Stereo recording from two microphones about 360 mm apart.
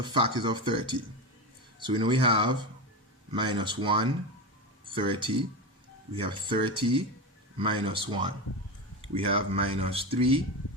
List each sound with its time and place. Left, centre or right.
0.0 s speech: centre